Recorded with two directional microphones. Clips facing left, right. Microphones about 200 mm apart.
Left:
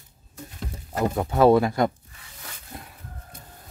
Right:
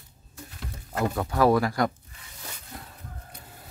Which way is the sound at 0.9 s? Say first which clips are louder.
Left 3 dB; 25° left (ahead or behind).